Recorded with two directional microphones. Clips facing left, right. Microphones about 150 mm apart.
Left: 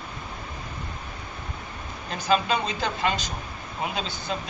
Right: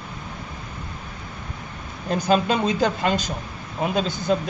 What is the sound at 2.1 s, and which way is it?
Speech, 45° right (ahead or behind).